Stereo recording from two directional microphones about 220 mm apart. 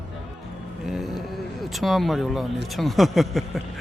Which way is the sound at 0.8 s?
Centre (ahead or behind).